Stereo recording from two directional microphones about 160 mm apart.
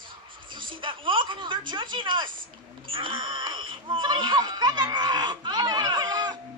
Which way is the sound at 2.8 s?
30° right (ahead or behind).